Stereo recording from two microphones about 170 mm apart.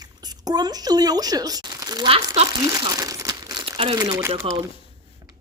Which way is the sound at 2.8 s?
20° right (ahead or behind).